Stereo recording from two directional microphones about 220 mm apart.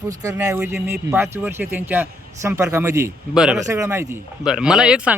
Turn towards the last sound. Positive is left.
turn(degrees=-5)  # may be behind; listen again after turning